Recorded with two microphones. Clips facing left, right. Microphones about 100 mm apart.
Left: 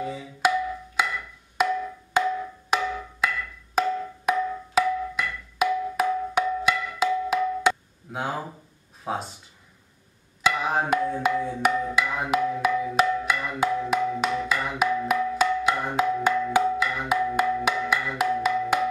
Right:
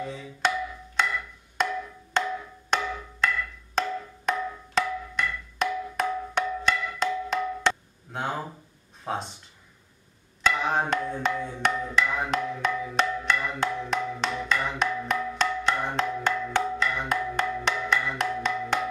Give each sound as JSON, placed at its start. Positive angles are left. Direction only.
{"t": 0.0, "sound": "music", "side_deg": 5}
{"t": 1.0, "sound": "wood block", "side_deg": 5}
{"t": 9.0, "sound": "speech", "side_deg": 5}
{"t": 10.4, "sound": "music", "side_deg": 5}